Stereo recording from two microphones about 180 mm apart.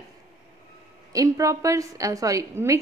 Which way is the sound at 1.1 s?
20° right (ahead or behind).